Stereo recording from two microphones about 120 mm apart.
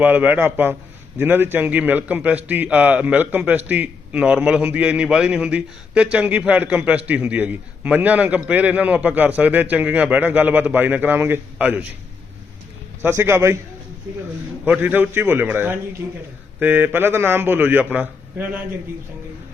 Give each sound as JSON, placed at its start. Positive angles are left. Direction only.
{"t": 0.0, "sound": "a man's voice", "side_deg": -15}
{"t": 13.0, "sound": "a man's voice", "side_deg": -20}
{"t": 14.6, "sound": "a man's voice", "side_deg": -15}